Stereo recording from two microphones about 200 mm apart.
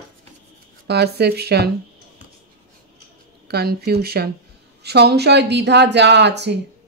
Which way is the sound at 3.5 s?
50° right (ahead or behind).